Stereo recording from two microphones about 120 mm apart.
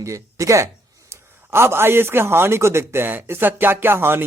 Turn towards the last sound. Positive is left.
turn(degrees=-20)  # may be behind; listen again after turning